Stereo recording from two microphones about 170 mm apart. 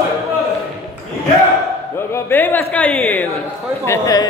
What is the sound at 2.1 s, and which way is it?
A man's voice, 10° left (ahead or behind).